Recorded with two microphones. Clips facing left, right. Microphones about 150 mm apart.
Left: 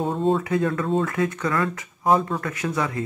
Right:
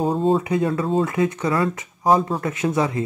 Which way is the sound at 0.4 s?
20° right (ahead or behind).